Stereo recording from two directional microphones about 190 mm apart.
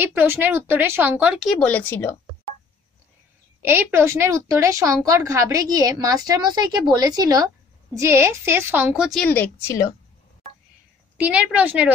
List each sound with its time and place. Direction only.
0.0 s a woman's voice: 10° right (ahead or behind); by 2.0 s 10° left (ahead or behind)
3.6 s a woman's voice: 10° right (ahead or behind); by 9.8 s 10° left (ahead or behind)
11.1 s a woman's voice: 10° right (ahead or behind)